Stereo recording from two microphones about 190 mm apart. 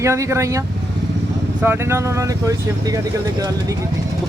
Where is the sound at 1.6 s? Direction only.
10° right (ahead or behind).